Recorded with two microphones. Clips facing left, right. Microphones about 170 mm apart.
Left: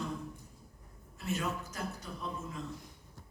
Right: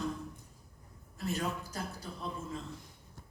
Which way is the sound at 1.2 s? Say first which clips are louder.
Even; 35° right (ahead or behind).